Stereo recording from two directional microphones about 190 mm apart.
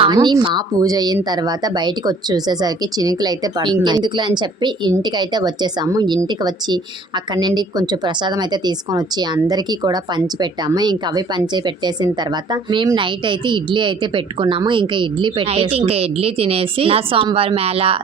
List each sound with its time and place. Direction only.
0.0 s a woman's voice: 25° right (ahead or behind)